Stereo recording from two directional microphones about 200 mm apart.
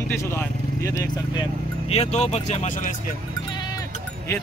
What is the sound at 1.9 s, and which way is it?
Speech, 35° left (ahead or behind).